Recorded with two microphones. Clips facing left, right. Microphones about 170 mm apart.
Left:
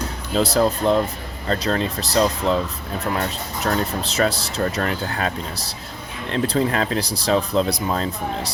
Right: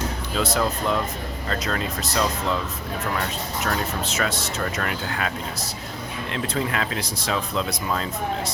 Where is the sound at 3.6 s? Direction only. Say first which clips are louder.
Left 5 dB; 35° left (ahead or behind).